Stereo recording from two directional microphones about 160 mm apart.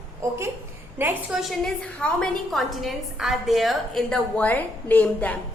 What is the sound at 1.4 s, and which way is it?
A woman's voice, centre (ahead or behind).